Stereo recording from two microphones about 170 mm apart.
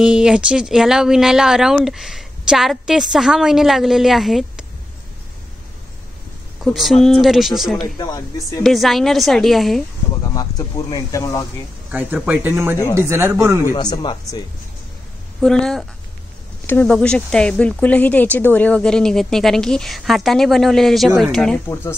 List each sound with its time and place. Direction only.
0.0 s speech: 5° right (ahead or behind)
6.6 s speech: centre (ahead or behind)
8.0 s speech: 20° left (ahead or behind)
8.6 s speech: centre (ahead or behind)
10.3 s speech: 20° left (ahead or behind)
11.9 s speech: 10° right (ahead or behind)
13.7 s speech: 25° left (ahead or behind)
15.4 s speech: centre (ahead or behind)